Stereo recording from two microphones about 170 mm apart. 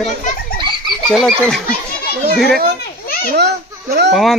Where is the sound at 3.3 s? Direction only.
75° right (ahead or behind).